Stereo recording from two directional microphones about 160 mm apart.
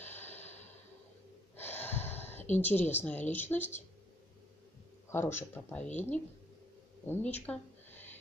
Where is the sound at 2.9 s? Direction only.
10° left (ahead or behind).